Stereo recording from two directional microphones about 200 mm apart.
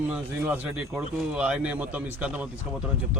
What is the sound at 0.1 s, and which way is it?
Speech, 5° right (ahead or behind).